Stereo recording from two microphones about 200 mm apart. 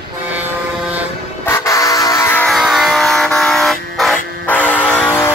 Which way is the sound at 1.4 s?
15° left (ahead or behind).